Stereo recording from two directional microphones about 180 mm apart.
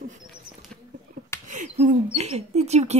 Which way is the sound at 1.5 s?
45° right (ahead or behind).